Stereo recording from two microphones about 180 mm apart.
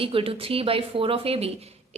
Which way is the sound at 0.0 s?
30° right (ahead or behind).